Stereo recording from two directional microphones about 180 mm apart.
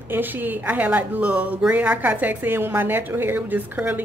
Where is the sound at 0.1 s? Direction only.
10° right (ahead or behind).